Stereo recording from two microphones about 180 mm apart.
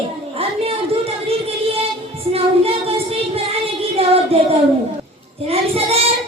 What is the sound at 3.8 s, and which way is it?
Music, 35° right (ahead or behind).